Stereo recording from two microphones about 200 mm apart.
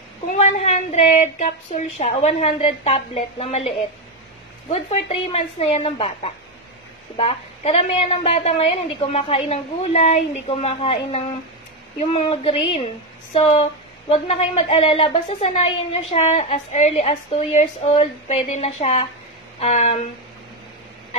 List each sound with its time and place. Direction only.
0.4 s a woman's voice: 30° left (ahead or behind)